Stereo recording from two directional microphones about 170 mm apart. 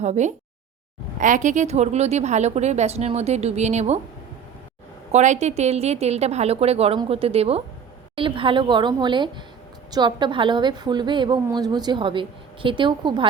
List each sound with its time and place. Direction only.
0.0 s a sound: 45° right (ahead or behind)
1.2 s a woman's voice: 50° right (ahead or behind)
5.1 s a woman's voice: 45° right (ahead or behind)